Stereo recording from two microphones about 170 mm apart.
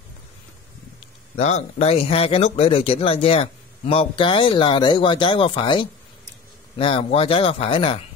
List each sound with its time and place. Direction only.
1.3 s a man's voice: 40° left (ahead or behind)